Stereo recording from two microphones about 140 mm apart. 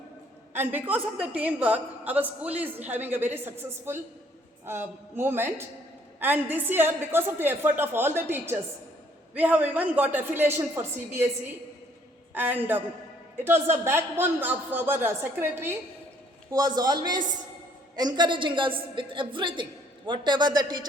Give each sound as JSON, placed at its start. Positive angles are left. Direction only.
{"t": 0.5, "sound": "a woman's voice", "side_deg": -15}
{"t": 12.3, "sound": "a woman's voice", "side_deg": -15}
{"t": 16.5, "sound": "a woman's voice", "side_deg": -25}